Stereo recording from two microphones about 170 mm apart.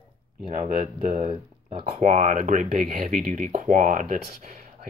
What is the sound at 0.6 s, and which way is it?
Speech, 50° right (ahead or behind).